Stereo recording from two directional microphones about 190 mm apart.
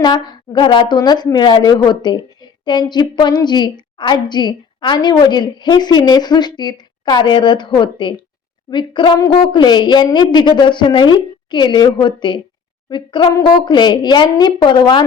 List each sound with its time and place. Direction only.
0.0 s a woman's voice: 20° left (ahead or behind)